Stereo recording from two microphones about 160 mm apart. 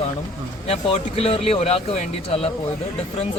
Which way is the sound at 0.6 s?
40° left (ahead or behind).